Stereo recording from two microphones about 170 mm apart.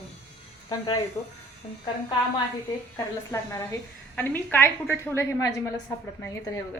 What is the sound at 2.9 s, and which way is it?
A woman's voice, 20° left (ahead or behind).